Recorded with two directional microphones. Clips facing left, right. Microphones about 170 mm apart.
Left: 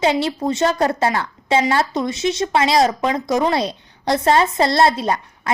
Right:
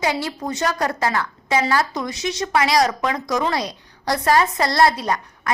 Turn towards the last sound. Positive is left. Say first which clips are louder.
# left 3 dB
turn(degrees=25)  # may be behind; listen again after turning